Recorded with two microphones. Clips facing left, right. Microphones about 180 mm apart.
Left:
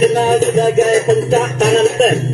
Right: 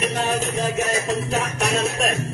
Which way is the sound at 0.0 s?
40° left (ahead or behind).